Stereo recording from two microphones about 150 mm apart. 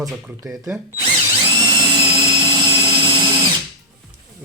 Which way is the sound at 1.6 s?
30° right (ahead or behind).